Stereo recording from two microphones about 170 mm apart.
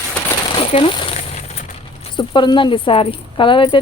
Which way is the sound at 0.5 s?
30° left (ahead or behind).